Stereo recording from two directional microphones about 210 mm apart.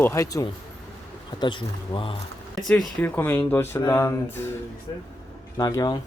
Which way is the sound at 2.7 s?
5° left (ahead or behind).